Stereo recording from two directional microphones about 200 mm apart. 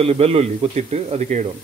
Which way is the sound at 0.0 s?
30° right (ahead or behind).